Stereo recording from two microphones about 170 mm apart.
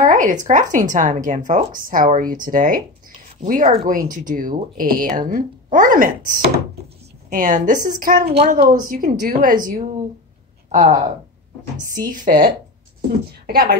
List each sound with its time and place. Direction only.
0.0 s a sound: 50° right (ahead or behind)
0.5 s speech: 50° right (ahead or behind)
8.4 s speech: 35° right (ahead or behind)
8.8 s speech: 55° right (ahead or behind)
13.3 s speech: 65° right (ahead or behind)